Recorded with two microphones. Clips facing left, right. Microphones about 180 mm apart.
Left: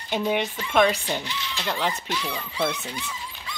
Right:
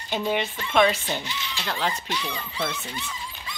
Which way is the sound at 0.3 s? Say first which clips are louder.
Even; 10° left (ahead or behind).